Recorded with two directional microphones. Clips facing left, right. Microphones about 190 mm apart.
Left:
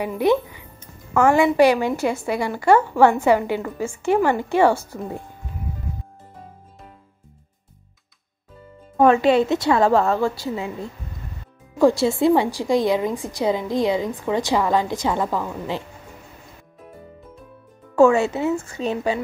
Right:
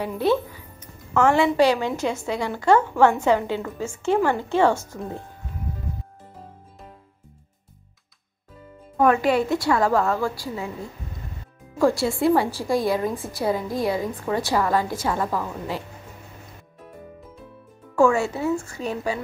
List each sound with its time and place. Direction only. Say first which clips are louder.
0.2 s a woman's voice: left 3 dB; 15° left (ahead or behind)
8.9 s a woman's voice: left 4 dB; 25° left (ahead or behind)
11.8 s a woman's voice: left 3 dB; 20° left (ahead or behind)
17.9 s a woman's voice: left 4 dB; 20° left (ahead or behind)